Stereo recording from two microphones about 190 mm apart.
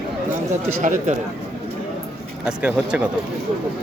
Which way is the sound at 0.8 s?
40° right (ahead or behind).